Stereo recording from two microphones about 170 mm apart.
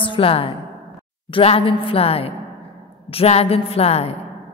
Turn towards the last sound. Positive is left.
turn(degrees=35)  # may be behind; listen again after turning